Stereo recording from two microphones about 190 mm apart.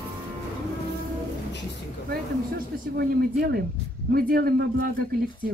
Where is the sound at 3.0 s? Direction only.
55° right (ahead or behind).